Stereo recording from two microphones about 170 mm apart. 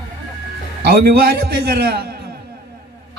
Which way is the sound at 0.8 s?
65° right (ahead or behind).